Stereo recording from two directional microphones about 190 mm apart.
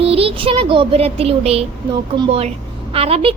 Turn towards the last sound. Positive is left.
turn(degrees=-30)  # may be behind; listen again after turning